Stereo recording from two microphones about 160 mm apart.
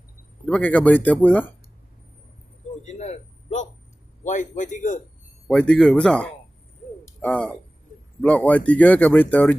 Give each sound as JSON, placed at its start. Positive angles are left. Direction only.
{"t": 0.5, "sound": "speech", "side_deg": 10}
{"t": 2.8, "sound": "a sound", "side_deg": 45}
{"t": 4.2, "sound": "a man's voice", "side_deg": 50}
{"t": 5.5, "sound": "speech", "side_deg": 5}